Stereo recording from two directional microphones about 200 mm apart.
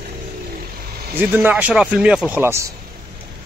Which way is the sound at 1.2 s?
10° right (ahead or behind).